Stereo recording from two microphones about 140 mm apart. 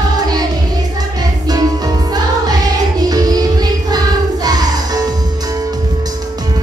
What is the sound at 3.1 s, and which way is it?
Music, 25° right (ahead or behind).